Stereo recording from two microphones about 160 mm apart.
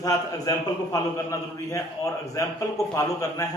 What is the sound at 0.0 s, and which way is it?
A man's voice, 20° left (ahead or behind).